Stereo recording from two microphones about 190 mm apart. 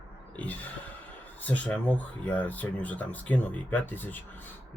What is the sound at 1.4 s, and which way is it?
Speech, 10° left (ahead or behind).